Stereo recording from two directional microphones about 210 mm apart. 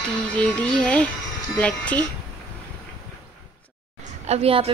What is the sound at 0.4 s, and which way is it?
Speech, 5° left (ahead or behind).